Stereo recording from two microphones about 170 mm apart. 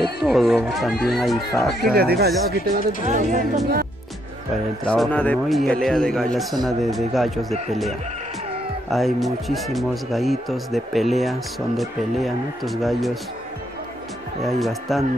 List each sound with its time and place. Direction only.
0.0 s a man's voice: centre (ahead or behind)
1.9 s speech: 65° right (ahead or behind)
3.1 s speech: 50° right (ahead or behind)
4.8 s a man's voice: 5° left (ahead or behind)
8.9 s a man's voice: centre (ahead or behind)
14.6 s a man's voice: centre (ahead or behind)